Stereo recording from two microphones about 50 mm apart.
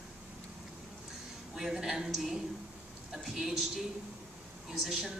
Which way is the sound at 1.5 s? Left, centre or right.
Centre.